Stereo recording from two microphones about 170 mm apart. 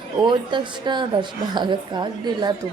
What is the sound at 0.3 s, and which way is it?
A woman's voice, 25° right (ahead or behind).